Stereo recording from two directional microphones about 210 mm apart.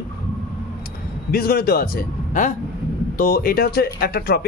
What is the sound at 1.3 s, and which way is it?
A man's voice, 45° left (ahead or behind).